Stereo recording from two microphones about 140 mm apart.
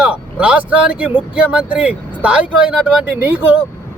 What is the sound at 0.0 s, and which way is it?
Speech, 10° right (ahead or behind).